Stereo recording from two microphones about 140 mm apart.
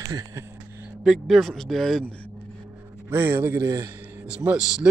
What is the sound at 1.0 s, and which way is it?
Speech, centre (ahead or behind).